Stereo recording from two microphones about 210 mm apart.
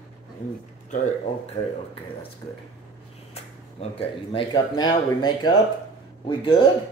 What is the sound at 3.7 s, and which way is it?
Speech, 25° left (ahead or behind).